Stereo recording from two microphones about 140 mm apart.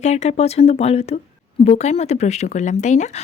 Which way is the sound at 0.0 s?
50° left (ahead or behind).